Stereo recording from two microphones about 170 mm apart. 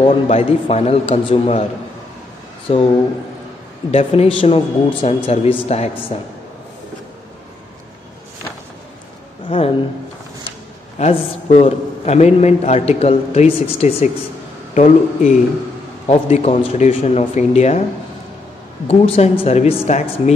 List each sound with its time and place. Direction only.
0.0 s a man's voice: 35° left (ahead or behind)
2.7 s a man's voice: 35° left (ahead or behind)
3.9 s a man's voice: 35° left (ahead or behind)
9.5 s a man's voice: 35° left (ahead or behind)
11.0 s a man's voice: 45° left (ahead or behind)
18.9 s a man's voice: 35° left (ahead or behind)